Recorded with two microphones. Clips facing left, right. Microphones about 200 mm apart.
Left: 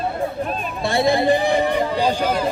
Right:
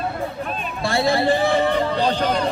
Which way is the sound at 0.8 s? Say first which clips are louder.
Left 2 dB; 20° left (ahead or behind).